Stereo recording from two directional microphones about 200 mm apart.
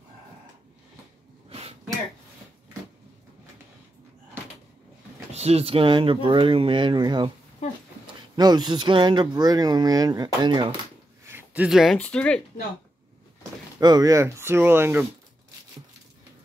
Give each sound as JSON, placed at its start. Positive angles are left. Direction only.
{"t": 1.5, "sound": "sneeze", "side_deg": -30}
{"t": 5.3, "sound": "speech", "side_deg": -30}
{"t": 8.4, "sound": "speech", "side_deg": -20}
{"t": 11.2, "sound": "speech", "side_deg": -10}
{"t": 13.7, "sound": "speech", "side_deg": -20}